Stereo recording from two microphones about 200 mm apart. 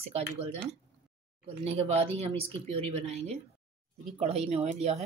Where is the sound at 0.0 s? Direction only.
30° right (ahead or behind).